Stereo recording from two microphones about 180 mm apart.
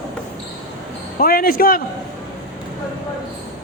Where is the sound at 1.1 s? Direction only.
55° left (ahead or behind).